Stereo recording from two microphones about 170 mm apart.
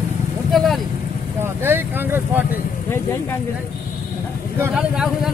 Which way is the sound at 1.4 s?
15° right (ahead or behind).